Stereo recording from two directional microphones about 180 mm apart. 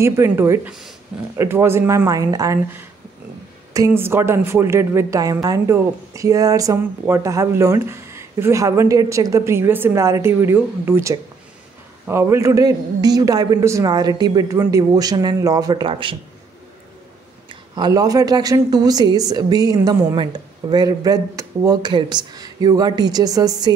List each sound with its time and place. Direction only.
0.0 s a woman's voice: 15° right (ahead or behind)
17.7 s a woman's voice: 20° right (ahead or behind)